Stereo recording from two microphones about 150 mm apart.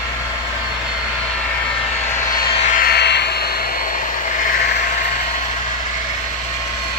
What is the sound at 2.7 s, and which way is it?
Vehicle, 90° left.